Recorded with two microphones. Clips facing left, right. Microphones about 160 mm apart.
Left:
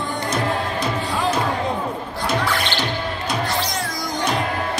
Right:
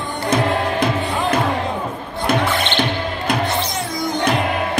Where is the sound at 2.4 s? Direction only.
20° right (ahead or behind).